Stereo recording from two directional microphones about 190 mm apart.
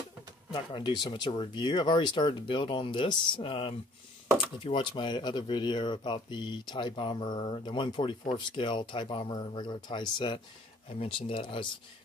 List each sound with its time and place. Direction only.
0.5 s speech: 25° left (ahead or behind)